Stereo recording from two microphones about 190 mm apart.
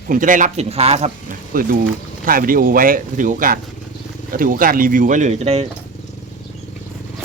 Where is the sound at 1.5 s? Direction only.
45° right (ahead or behind).